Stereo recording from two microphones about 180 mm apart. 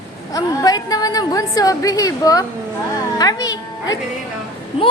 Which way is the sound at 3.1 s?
20° left (ahead or behind).